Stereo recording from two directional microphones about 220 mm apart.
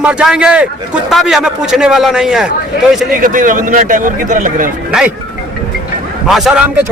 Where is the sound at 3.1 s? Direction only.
40° right (ahead or behind).